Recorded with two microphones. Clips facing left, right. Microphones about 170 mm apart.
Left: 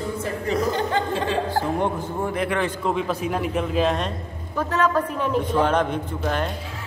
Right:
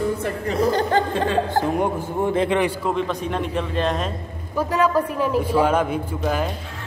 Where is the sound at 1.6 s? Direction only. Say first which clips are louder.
Right 2 dB; 20° right (ahead or behind).